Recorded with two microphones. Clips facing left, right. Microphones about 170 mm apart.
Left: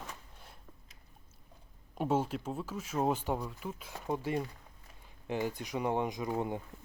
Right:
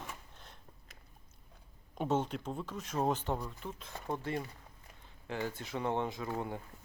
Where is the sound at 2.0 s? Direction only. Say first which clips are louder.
Left 2 dB; 5° left (ahead or behind).